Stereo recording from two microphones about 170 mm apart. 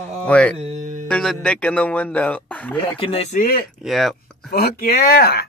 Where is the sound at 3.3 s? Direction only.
55° left (ahead or behind).